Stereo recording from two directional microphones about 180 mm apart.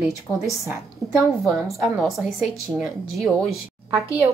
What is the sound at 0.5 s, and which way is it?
A woman's voice, 10° right (ahead or behind).